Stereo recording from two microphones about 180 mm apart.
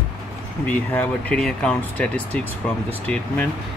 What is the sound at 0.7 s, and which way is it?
Speech, 10° left (ahead or behind).